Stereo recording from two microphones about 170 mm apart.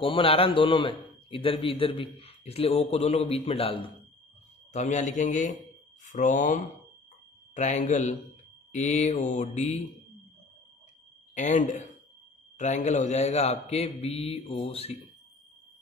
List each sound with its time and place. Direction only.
0.1 s a man's voice: 30° left (ahead or behind)
4.7 s mantra: 45° left (ahead or behind)
6.0 s speech: 45° left (ahead or behind)
7.5 s mantra: 45° left (ahead or behind)
11.3 s mantra: 45° left (ahead or behind)
12.5 s a man's voice: 45° left (ahead or behind)